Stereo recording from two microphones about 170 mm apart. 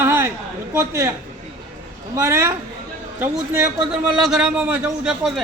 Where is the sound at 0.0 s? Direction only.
15° right (ahead or behind).